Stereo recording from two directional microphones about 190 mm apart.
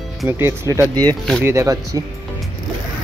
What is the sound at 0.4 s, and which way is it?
Speech, 15° right (ahead or behind).